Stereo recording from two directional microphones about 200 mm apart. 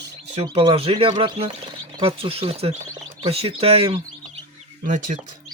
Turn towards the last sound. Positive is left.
turn(degrees=-40)  # may be behind; listen again after turning